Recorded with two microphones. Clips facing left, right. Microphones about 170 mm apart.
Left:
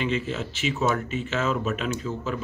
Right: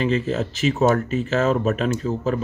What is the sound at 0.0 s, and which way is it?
Speech, 40° right (ahead or behind).